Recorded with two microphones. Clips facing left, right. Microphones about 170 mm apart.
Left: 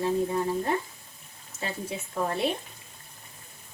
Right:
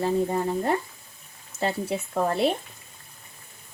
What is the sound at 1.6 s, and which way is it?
Speech, 65° right (ahead or behind).